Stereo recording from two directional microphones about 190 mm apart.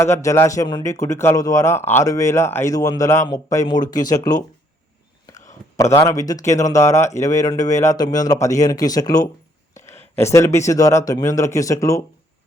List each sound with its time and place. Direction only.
0.0 s speech: 15° left (ahead or behind)
5.7 s speech: 15° left (ahead or behind)
9.7 s a sound: 15° left (ahead or behind)
10.2 s speech: 15° left (ahead or behind)